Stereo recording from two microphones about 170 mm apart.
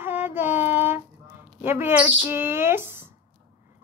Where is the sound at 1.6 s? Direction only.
10° right (ahead or behind).